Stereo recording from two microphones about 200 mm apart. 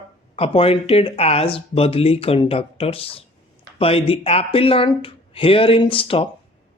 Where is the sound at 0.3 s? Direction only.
30° left (ahead or behind).